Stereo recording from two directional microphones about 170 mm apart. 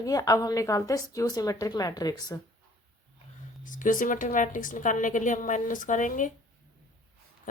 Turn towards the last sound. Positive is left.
turn(degrees=50)  # may be behind; listen again after turning